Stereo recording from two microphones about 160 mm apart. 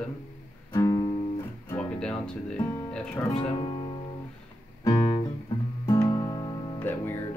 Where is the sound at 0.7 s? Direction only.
25° left (ahead or behind).